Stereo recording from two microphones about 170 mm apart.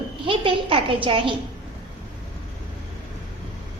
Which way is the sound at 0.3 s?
30° right (ahead or behind).